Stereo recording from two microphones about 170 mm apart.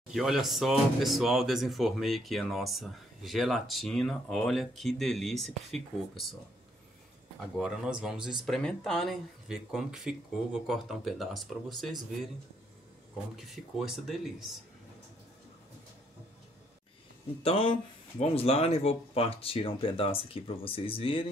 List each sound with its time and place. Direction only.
0.1 s speech: centre (ahead or behind)
7.5 s speech: centre (ahead or behind)
13.4 s speech: centre (ahead or behind)
17.4 s speech: 30° left (ahead or behind)